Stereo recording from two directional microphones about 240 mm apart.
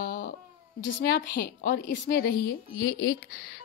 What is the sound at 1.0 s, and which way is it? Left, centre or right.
A woman's voice, left.